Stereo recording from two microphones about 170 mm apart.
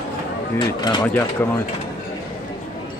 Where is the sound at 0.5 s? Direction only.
25° left (ahead or behind).